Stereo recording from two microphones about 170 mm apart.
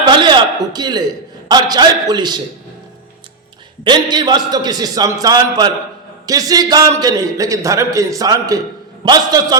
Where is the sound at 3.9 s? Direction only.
25° right (ahead or behind).